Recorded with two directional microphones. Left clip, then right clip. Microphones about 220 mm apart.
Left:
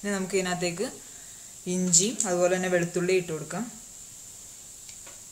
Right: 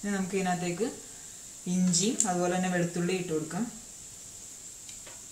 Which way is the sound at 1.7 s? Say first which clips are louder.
Left 4 dB; 55° left (ahead or behind).